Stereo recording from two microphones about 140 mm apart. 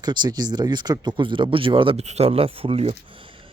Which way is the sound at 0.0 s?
30° right (ahead or behind).